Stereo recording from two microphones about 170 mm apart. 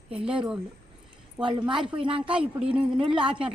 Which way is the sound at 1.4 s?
25° right (ahead or behind).